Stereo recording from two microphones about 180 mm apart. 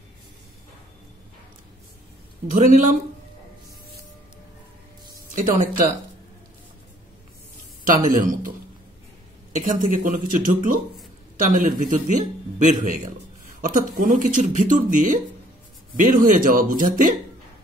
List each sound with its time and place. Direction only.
2.5 s speech: 45° right (ahead or behind)
5.3 s speech: 45° right (ahead or behind)
7.8 s speech: 50° right (ahead or behind)
9.6 s speech: 45° right (ahead or behind)